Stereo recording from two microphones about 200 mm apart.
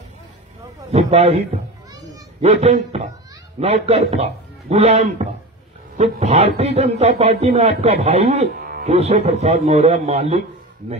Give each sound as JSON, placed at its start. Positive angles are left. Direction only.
{"t": 0.9, "sound": "a man's voice", "side_deg": -30}
{"t": 2.4, "sound": "a man's voice", "side_deg": -30}
{"t": 8.8, "sound": "a man's voice", "side_deg": -30}